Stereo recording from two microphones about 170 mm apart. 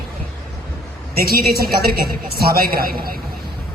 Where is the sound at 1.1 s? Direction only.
60° right (ahead or behind).